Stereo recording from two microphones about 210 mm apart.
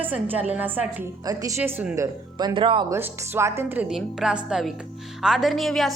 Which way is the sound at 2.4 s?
25° right (ahead or behind).